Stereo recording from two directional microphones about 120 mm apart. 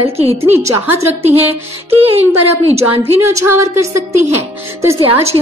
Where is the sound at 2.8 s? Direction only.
25° right (ahead or behind).